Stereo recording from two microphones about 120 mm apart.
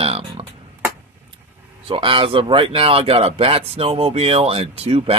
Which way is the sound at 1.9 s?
50° right (ahead or behind).